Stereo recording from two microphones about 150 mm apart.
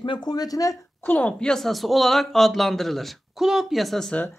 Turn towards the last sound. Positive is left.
turn(degrees=5)  # may be behind; listen again after turning